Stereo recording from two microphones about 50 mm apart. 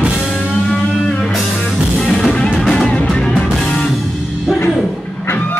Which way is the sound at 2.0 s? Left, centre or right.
Centre.